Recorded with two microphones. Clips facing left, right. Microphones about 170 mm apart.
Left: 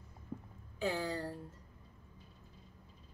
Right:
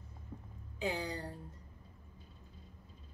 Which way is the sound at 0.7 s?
15° right (ahead or behind).